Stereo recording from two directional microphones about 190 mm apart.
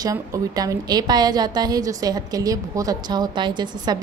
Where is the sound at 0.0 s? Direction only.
20° right (ahead or behind).